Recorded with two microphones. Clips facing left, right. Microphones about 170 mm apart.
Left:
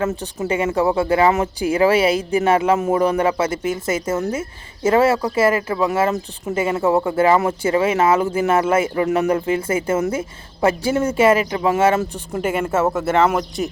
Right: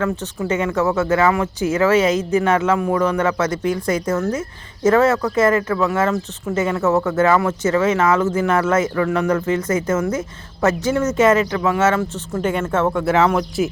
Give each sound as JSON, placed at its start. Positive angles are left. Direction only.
{"t": 0.0, "sound": "speech", "side_deg": 20}
{"t": 5.7, "sound": "speech", "side_deg": 20}
{"t": 7.6, "sound": "speech", "side_deg": 10}
{"t": 11.5, "sound": "speech", "side_deg": 20}